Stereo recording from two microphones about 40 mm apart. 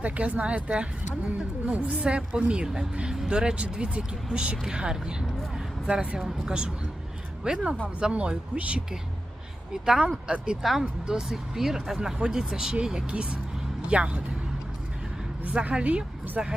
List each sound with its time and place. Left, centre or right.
0.0 s speech: right
6.1 s speech: centre
7.4 s speech: right
9.7 s speech: centre
10.6 s speech: centre; by 14.2 s right
15.8 s speech: right
16.4 s speech: centre